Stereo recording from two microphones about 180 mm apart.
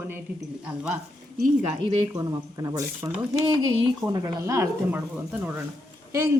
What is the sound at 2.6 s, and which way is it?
Speech, 20° right (ahead or behind).